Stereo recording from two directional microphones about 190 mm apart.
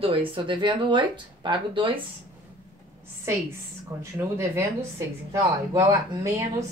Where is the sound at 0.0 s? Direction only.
30° right (ahead or behind).